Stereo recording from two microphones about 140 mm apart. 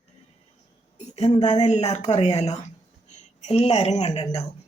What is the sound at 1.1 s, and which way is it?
Speech, 50° left (ahead or behind).